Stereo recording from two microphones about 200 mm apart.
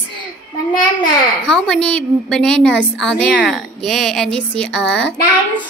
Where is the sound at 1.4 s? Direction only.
5° left (ahead or behind).